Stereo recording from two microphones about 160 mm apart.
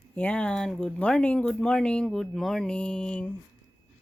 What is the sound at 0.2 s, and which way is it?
Speech, 10° left (ahead or behind).